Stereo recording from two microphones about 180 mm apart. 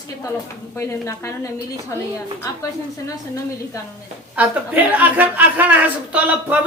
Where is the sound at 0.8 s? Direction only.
15° left (ahead or behind).